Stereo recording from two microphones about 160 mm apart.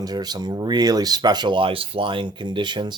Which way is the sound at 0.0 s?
25° right (ahead or behind).